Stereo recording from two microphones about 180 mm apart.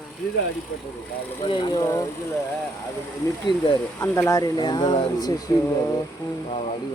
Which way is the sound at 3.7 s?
15° left (ahead or behind).